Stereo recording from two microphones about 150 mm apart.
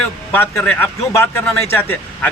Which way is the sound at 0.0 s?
10° left (ahead or behind).